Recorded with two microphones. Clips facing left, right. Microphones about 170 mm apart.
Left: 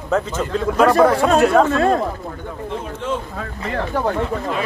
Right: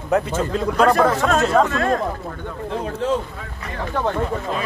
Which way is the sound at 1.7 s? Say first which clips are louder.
Left 4 dB; 30° left (ahead or behind).